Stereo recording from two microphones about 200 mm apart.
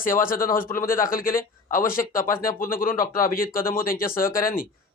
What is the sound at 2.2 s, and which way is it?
Speech, 15° left (ahead or behind).